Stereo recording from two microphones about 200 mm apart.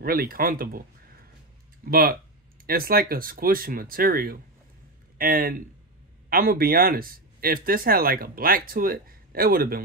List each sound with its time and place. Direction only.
0.0 s speech: 45° right (ahead or behind)
1.9 s speech: 50° right (ahead or behind)